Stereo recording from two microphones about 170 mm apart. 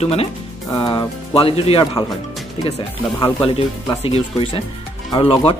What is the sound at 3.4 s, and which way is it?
Speech, 30° left (ahead or behind).